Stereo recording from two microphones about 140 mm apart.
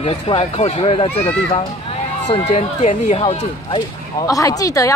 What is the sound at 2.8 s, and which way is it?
Speech, 60° left (ahead or behind).